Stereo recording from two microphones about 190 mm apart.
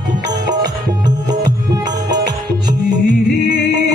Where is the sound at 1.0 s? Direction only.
20° right (ahead or behind).